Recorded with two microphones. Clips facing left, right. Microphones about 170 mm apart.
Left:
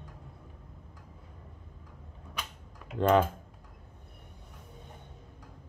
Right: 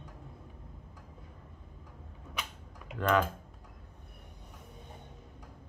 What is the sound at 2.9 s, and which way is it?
Speech, 25° left (ahead or behind).